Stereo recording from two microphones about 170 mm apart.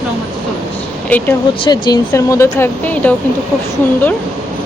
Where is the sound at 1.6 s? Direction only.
25° left (ahead or behind).